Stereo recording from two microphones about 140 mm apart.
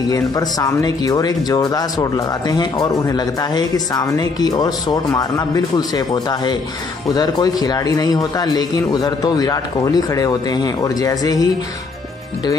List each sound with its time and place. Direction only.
0.1 s speech: 25° left (ahead or behind)